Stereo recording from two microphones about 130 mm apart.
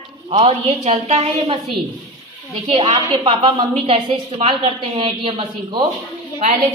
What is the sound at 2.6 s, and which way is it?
A woman's voice, 55° right (ahead or behind).